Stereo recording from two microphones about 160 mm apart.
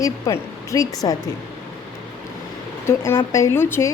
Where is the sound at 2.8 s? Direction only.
15° left (ahead or behind).